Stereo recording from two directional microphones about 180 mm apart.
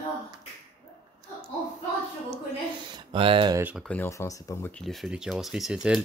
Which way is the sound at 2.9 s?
30° right (ahead or behind).